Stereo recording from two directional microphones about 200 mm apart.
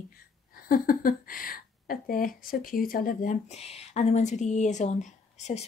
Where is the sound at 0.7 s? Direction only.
45° left (ahead or behind).